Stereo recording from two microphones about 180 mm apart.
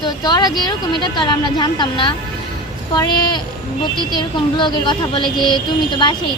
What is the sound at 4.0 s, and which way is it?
Speech, 25° left (ahead or behind).